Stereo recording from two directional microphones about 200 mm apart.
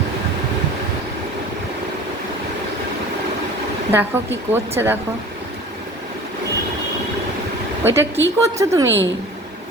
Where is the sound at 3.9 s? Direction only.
10° right (ahead or behind).